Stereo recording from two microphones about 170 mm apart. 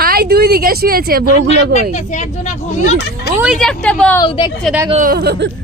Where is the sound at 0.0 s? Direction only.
65° right (ahead or behind).